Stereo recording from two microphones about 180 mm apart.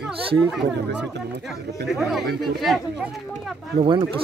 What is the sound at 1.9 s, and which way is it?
Speech, centre (ahead or behind).